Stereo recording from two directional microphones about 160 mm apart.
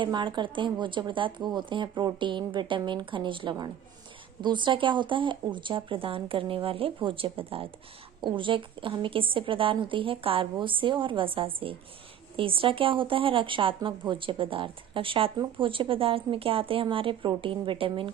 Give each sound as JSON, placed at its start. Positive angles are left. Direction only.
{"t": 0.0, "sound": "a woman's voice", "side_deg": -30}